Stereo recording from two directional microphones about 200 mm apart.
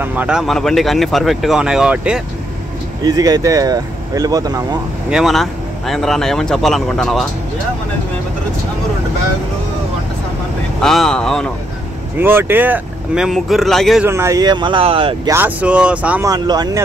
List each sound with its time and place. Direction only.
0.0 s speech: 10° right (ahead or behind)
3.0 s speech: 20° right (ahead or behind)
5.1 s speech: centre (ahead or behind)
10.8 s speech: centre (ahead or behind)
12.2 s speech: 10° right (ahead or behind)
14.0 s speech: 15° right (ahead or behind)
15.3 s speech: 5° right (ahead or behind)
16.3 s speech: 20° right (ahead or behind)